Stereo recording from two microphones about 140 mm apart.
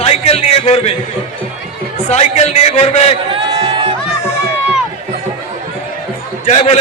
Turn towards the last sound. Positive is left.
turn(degrees=55)  # may be behind; listen again after turning